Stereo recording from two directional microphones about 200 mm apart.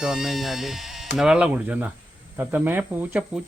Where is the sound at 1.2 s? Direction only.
5° right (ahead or behind).